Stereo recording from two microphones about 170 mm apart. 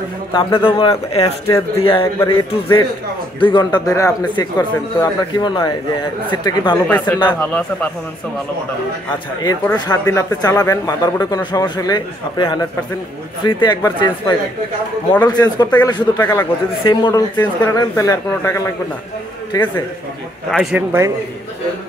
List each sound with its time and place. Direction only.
0.3 s speech: 30° left (ahead or behind)
6.9 s speech: 10° left (ahead or behind)
9.4 s speech: 20° left (ahead or behind)
16.8 s speech: 25° left (ahead or behind)
20.7 s a man's voice: 15° right (ahead or behind)